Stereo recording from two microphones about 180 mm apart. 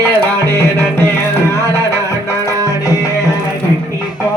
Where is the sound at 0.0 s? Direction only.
15° left (ahead or behind).